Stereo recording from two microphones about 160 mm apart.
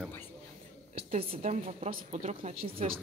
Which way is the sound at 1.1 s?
40° right (ahead or behind).